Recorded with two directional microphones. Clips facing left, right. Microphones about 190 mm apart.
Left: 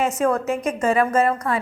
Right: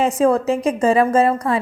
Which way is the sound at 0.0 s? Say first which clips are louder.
Right 4 dB; 30° right (ahead or behind).